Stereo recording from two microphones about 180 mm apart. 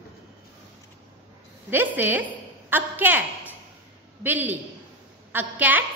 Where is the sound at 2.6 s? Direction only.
10° right (ahead or behind).